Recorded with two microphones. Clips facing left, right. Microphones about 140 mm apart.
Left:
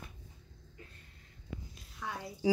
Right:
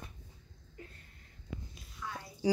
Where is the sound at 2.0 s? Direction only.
65° left (ahead or behind).